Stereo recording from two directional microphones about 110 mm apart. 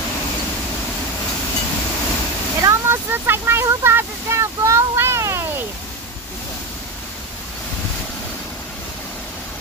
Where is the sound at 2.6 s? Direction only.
20° right (ahead or behind).